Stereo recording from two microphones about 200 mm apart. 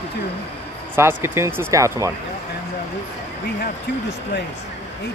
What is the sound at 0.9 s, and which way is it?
Speech, 10° right (ahead or behind).